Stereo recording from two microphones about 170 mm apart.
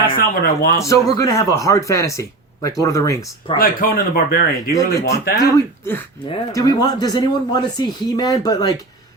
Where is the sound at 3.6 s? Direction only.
55° left (ahead or behind).